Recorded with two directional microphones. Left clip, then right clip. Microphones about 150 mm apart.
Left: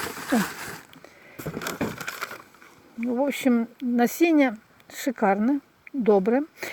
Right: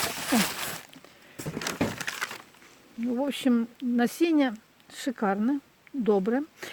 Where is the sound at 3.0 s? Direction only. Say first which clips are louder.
Left 4 dB; 20° left (ahead or behind).